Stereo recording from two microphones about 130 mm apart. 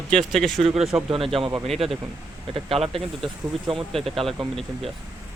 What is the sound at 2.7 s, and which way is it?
Speech, 50° right (ahead or behind).